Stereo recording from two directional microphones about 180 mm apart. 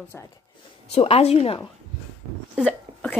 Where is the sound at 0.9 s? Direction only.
35° left (ahead or behind).